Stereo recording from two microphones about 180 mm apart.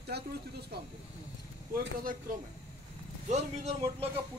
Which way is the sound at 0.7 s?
60° right (ahead or behind).